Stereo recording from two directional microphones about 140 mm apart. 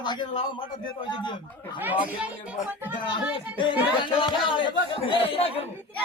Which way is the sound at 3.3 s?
35° left (ahead or behind).